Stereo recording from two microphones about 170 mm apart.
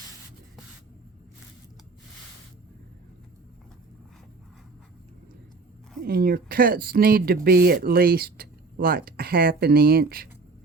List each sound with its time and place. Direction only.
6.0 s speech: 65° right (ahead or behind)